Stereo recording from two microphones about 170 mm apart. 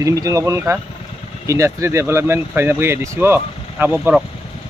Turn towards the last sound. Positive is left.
turn(degrees=-10)  # may be behind; listen again after turning